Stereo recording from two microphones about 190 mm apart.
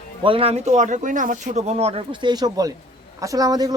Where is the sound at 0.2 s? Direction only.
30° right (ahead or behind).